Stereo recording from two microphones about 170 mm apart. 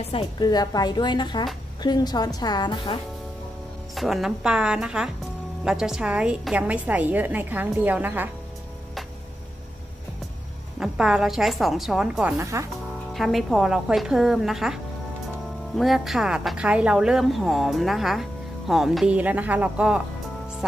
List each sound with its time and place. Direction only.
0.0 s a woman's voice: 30° left (ahead or behind)
3.9 s a woman's voice: centre (ahead or behind)
10.8 s speech: 5° right (ahead or behind)
13.1 s a woman's voice: centre (ahead or behind)